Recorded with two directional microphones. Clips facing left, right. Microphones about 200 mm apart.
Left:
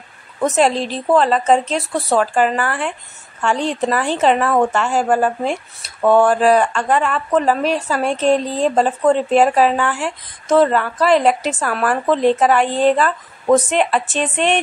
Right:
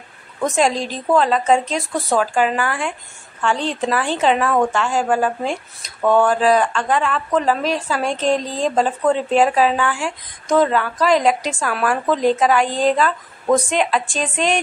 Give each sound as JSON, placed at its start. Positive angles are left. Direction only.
{"t": 0.4, "sound": "a woman's voice", "side_deg": 5}
{"t": 4.2, "sound": "a woman's voice", "side_deg": 5}